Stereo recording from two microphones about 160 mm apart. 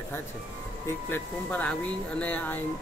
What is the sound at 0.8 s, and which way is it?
Speech, 15° left (ahead or behind).